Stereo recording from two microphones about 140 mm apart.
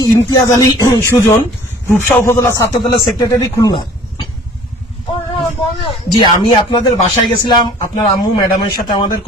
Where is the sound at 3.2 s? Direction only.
30° left (ahead or behind).